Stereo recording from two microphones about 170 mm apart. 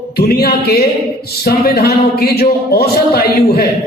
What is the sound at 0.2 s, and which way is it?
A man's voice, 65° left (ahead or behind).